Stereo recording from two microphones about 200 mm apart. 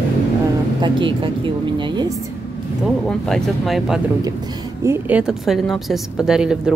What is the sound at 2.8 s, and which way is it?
Speech, centre (ahead or behind).